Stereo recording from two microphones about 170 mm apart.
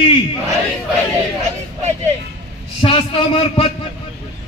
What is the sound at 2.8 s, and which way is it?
Speech, 30° left (ahead or behind).